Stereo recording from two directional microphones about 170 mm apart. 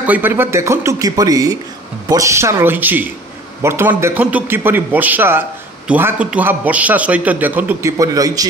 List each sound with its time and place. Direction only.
0.0 s a man's voice: 10° right (ahead or behind)